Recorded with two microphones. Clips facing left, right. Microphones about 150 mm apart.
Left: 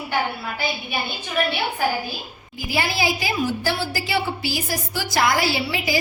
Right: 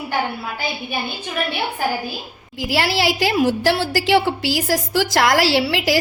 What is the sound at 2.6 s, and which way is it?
A woman's voice, 80° right.